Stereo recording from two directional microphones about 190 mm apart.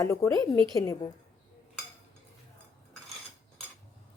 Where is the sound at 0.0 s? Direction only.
15° left (ahead or behind).